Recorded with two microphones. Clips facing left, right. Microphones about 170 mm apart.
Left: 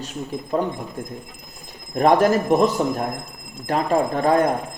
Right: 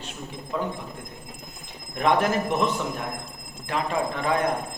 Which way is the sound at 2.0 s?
40° left (ahead or behind).